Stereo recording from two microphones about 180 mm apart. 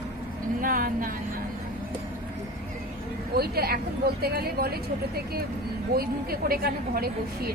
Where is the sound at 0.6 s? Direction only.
50° right (ahead or behind).